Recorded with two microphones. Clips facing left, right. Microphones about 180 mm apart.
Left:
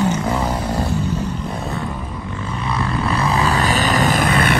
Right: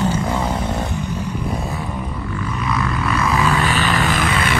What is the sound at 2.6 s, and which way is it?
Vehicle, 30° left (ahead or behind).